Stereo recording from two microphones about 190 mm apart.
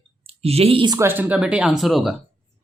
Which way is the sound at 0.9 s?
10° right (ahead or behind).